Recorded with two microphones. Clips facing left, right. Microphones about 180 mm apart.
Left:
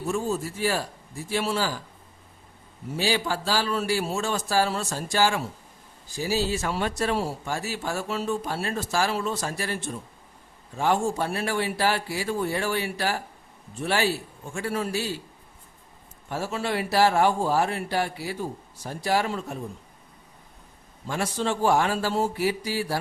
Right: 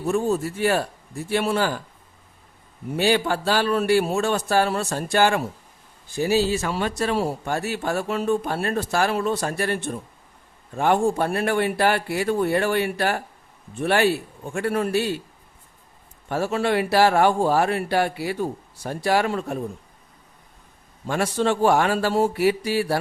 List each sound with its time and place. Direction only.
0.1 s speech: 60° right (ahead or behind)
2.9 s speech: 60° right (ahead or behind)
16.3 s speech: 65° right (ahead or behind)
21.1 s speech: 65° right (ahead or behind)